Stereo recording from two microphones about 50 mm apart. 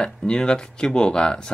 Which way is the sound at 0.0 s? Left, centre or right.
Centre.